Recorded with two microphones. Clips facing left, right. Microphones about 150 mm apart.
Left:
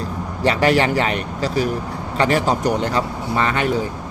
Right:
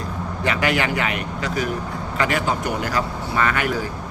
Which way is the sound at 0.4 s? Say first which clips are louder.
Left 5 dB; 35° left (ahead or behind).